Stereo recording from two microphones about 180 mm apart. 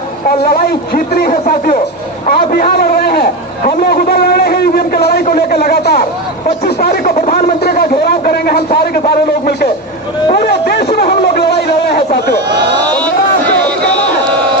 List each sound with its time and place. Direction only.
0.3 s a man's voice: 55° left (ahead or behind)
2.2 s a sound: 55° left (ahead or behind)
5.2 s speech: 55° left (ahead or behind)
10.5 s speech: 65° left (ahead or behind)